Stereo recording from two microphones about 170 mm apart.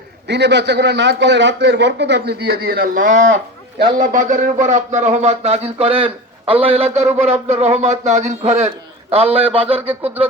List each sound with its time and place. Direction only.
0.3 s a man's voice: 90° right; by 9.9 s 35° right (ahead or behind)